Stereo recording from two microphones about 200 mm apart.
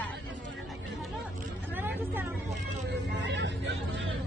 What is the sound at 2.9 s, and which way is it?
Vehicle, 60° right (ahead or behind).